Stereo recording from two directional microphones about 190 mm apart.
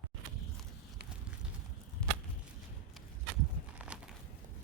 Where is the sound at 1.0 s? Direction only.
60° right (ahead or behind).